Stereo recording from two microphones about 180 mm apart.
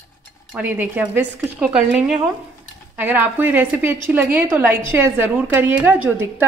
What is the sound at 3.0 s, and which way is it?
A woman's voice, 10° right (ahead or behind).